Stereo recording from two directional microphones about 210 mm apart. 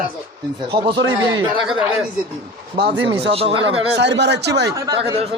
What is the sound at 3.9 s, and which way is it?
Speech, 55° right (ahead or behind).